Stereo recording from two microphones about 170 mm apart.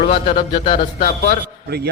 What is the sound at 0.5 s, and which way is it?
Speech, 30° left (ahead or behind).